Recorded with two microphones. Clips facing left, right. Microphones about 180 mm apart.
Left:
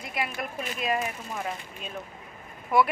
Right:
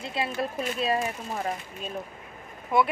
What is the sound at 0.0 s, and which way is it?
Speech, 25° right (ahead or behind).